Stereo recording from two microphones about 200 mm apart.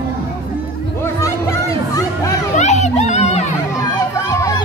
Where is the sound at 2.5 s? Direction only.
35° left (ahead or behind).